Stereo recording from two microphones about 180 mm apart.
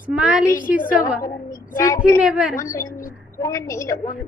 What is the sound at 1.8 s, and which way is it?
Speech, 20° left (ahead or behind).